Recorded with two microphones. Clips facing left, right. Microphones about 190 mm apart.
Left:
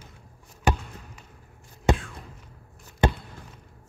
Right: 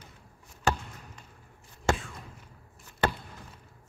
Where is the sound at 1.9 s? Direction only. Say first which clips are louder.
Left 4 dB; 20° left (ahead or behind).